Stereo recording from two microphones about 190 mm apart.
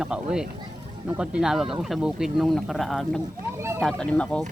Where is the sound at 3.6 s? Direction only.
15° right (ahead or behind).